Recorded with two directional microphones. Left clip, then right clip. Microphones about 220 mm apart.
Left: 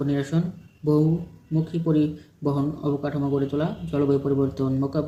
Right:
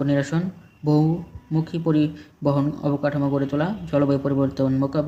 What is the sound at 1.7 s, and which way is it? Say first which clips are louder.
A man's voice: right 1 dB; 35° right (ahead or behind).